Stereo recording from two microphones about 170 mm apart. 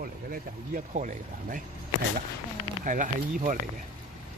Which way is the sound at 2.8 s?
50° right (ahead or behind).